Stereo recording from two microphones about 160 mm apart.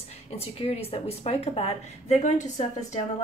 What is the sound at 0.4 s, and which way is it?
A woman's voice, 40° left (ahead or behind).